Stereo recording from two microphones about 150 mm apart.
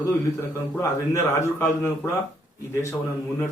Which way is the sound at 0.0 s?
20° left (ahead or behind).